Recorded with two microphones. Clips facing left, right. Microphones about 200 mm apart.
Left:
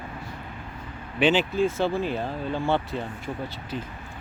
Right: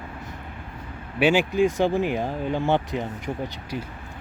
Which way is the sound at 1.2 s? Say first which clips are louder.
Right 2 dB; 10° right (ahead or behind).